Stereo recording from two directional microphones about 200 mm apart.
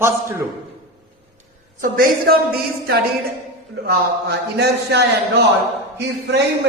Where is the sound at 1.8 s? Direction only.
45° right (ahead or behind).